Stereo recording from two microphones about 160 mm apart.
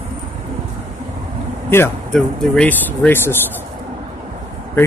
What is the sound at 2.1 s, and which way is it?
Speech, 5° left (ahead or behind).